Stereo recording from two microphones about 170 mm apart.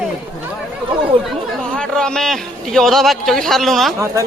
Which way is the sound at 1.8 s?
5° left (ahead or behind).